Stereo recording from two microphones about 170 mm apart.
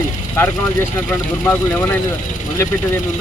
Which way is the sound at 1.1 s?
10° left (ahead or behind).